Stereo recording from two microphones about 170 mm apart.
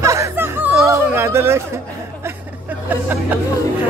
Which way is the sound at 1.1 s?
15° right (ahead or behind).